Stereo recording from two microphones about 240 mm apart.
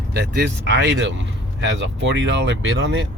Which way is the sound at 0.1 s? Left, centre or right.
Right.